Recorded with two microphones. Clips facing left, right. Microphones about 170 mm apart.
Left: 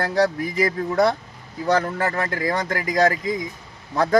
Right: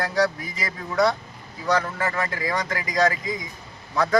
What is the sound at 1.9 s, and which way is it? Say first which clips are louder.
Speech: left 3 dB; 40° left (ahead or behind).